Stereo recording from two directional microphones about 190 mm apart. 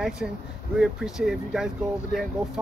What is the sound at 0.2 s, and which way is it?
Speech, 5° right (ahead or behind).